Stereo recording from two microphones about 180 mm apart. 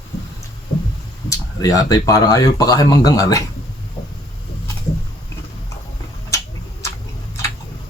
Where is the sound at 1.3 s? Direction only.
20° left (ahead or behind).